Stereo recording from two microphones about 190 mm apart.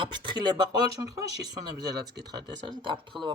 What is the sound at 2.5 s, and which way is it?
Speech, 25° right (ahead or behind).